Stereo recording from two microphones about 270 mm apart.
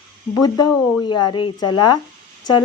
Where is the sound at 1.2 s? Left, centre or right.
Centre.